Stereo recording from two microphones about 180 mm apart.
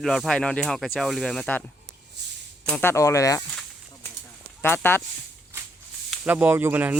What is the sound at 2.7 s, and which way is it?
Speech, 10° left (ahead or behind).